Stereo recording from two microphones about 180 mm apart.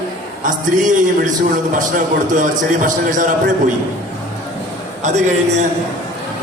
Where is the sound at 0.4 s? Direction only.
45° right (ahead or behind).